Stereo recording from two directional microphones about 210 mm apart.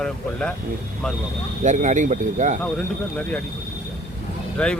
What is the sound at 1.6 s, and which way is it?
Speech, 35° right (ahead or behind).